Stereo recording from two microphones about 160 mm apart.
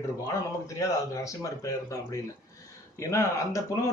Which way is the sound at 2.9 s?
20° left (ahead or behind).